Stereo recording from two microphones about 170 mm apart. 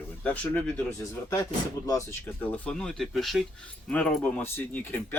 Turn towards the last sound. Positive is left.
turn(degrees=10)  # may be behind; listen again after turning